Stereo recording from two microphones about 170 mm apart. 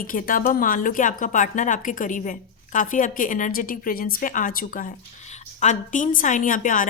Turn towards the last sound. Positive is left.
turn(degrees=50)  # may be behind; listen again after turning